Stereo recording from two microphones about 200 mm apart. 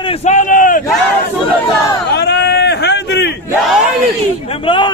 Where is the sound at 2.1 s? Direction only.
55° left (ahead or behind).